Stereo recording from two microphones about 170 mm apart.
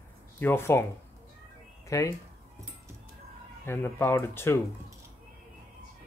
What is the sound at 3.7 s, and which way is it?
Speech, 15° left (ahead or behind).